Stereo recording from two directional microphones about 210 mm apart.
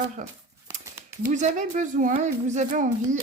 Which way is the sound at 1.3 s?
35° right (ahead or behind).